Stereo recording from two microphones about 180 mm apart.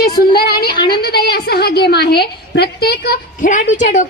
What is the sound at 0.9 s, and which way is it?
A woman's voice, 60° left (ahead or behind).